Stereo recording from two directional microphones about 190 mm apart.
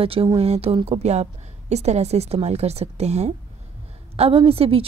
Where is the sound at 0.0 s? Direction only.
30° right (ahead or behind).